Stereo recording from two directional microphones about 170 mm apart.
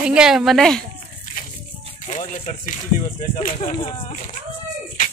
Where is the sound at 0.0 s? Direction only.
5° right (ahead or behind).